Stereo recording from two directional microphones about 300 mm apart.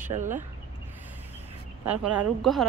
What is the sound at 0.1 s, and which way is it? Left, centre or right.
Speech, right.